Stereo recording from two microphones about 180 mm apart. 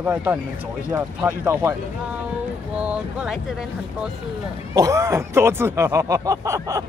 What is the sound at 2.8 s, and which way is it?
Speech, 5° right (ahead or behind).